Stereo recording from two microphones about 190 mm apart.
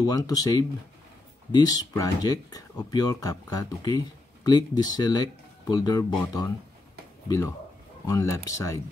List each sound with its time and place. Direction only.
0.0 s speech: 20° left (ahead or behind)
7.2 s speech: 20° left (ahead or behind)